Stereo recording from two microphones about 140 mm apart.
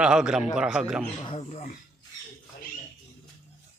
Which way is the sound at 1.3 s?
40° left (ahead or behind).